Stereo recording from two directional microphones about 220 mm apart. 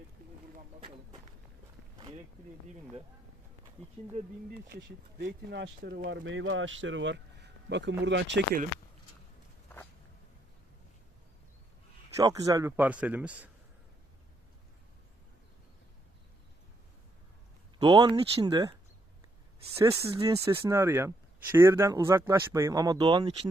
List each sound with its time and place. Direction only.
2.0 s speech: 25° right (ahead or behind)
4.8 s speech: 55° right (ahead or behind)
12.1 s speech: 15° right (ahead or behind)
17.7 s speech: 20° right (ahead or behind)
19.7 s speech: 10° right (ahead or behind)